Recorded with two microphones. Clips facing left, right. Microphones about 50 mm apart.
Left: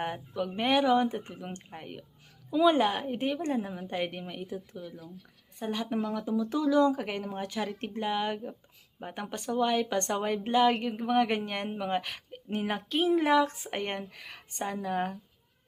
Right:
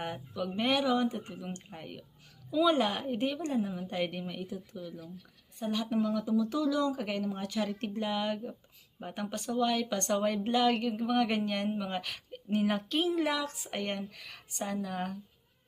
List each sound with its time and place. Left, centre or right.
0.0 s a woman's voice: left
5.5 s speech: left